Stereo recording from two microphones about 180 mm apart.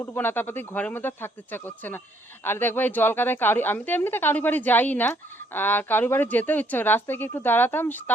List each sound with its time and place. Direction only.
0.0 s speech: 10° left (ahead or behind)